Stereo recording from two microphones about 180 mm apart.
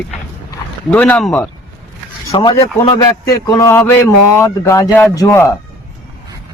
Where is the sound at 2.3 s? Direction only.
25° left (ahead or behind).